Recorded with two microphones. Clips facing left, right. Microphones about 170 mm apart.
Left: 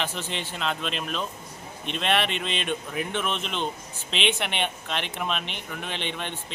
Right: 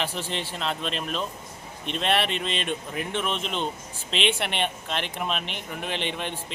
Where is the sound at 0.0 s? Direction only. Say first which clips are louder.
Right 1 dB; 35° right (ahead or behind).